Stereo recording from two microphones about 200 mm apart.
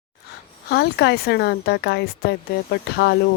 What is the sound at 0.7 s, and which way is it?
Speech, 55° left (ahead or behind).